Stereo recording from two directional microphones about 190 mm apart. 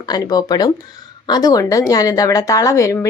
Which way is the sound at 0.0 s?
20° left (ahead or behind).